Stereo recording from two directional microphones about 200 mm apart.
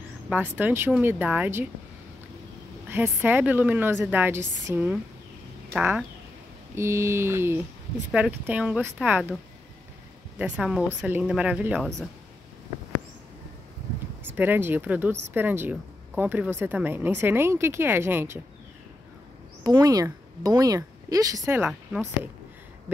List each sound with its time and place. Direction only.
0.3 s speech: 10° right (ahead or behind)
2.9 s speech: 10° right (ahead or behind)
10.4 s speech: 5° right (ahead or behind)
14.2 s speech: 10° right (ahead or behind)
19.6 s speech: 20° right (ahead or behind)